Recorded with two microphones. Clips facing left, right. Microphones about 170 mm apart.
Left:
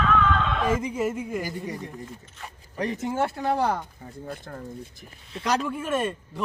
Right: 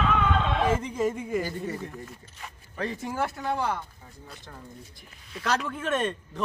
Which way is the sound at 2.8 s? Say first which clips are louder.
Left 4 dB; 20° left (ahead or behind).